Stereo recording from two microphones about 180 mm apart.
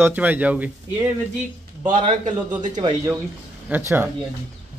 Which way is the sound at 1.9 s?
45° right (ahead or behind).